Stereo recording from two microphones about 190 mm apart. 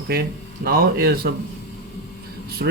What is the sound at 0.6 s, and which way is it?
Speech, 50° right (ahead or behind).